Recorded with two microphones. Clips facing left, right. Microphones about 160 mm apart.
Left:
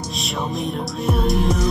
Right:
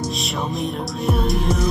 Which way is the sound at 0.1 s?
Centre (ahead or behind).